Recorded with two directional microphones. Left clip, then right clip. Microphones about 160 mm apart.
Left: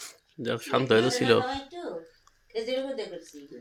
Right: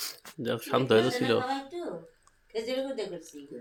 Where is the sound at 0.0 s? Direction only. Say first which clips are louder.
Even; 5° left (ahead or behind).